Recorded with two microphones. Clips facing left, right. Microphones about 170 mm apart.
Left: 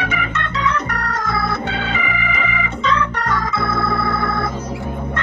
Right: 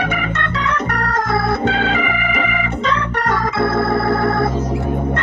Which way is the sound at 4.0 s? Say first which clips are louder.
Right 5 dB; 50° right (ahead or behind).